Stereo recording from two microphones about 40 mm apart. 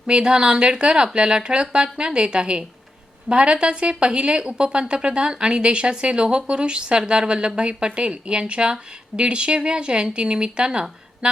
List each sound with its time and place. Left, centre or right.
0.1 s a woman's voice: right